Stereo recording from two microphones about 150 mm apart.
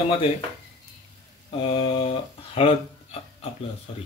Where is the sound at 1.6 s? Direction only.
40° left (ahead or behind).